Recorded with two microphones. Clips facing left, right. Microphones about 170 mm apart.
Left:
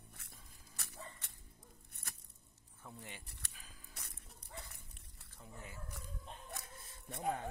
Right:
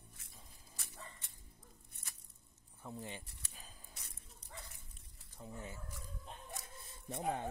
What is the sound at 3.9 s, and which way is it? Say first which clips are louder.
Dog: left 2 dB; 65° left (ahead or behind).